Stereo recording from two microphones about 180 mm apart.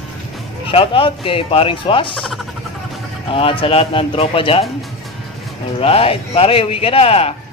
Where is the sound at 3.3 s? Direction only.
30° left (ahead or behind).